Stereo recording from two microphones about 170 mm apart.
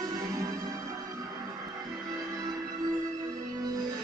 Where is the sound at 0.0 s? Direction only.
20° right (ahead or behind).